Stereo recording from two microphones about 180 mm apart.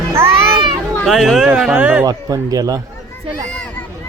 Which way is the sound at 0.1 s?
15° right (ahead or behind).